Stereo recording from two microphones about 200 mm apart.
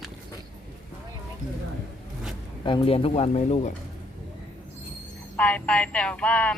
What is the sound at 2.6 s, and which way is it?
Speech, 25° left (ahead or behind).